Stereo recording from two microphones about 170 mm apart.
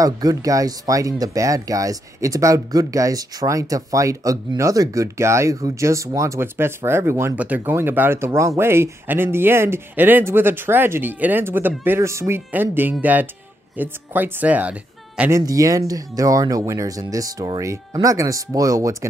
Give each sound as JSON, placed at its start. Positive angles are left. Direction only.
{"t": 0.0, "sound": "speech", "side_deg": -20}